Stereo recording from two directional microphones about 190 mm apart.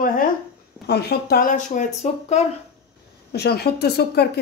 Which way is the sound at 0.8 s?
55° left (ahead or behind).